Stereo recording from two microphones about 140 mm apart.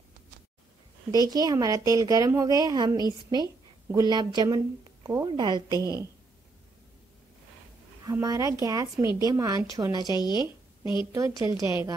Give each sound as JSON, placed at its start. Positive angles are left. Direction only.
{"t": 1.1, "sound": "a woman's voice", "side_deg": -30}
{"t": 8.0, "sound": "a woman's voice", "side_deg": -25}
{"t": 10.0, "sound": "speech", "side_deg": 30}
{"t": 11.5, "sound": "a woman's voice", "side_deg": -20}